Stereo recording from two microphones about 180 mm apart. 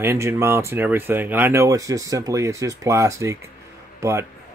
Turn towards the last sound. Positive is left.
turn(degrees=-15)  # may be behind; listen again after turning